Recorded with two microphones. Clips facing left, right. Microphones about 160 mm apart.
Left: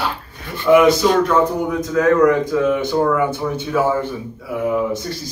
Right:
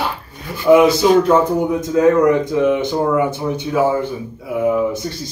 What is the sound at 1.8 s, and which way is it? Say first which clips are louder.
Speech: even; 25° right (ahead or behind).